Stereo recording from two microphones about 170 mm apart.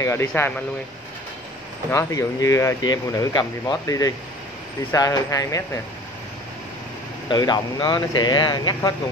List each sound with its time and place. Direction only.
0.0 s speech: 15° left (ahead or behind)
1.9 s speech: 20° left (ahead or behind)
7.2 s speech: 25° left (ahead or behind)